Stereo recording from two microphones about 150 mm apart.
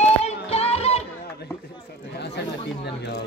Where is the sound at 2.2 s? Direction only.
90° left.